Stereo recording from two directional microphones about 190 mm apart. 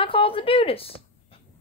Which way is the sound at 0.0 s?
30° left (ahead or behind).